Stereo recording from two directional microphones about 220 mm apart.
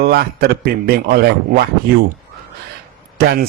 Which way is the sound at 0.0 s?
45° right (ahead or behind).